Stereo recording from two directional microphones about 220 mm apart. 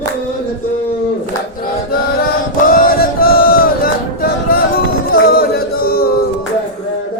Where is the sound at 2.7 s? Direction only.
40° left (ahead or behind).